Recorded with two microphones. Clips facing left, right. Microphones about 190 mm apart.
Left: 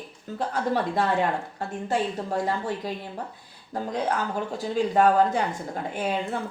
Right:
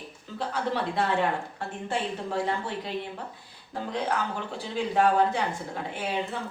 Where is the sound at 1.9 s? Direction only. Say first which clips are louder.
Left 4 dB; 40° left (ahead or behind).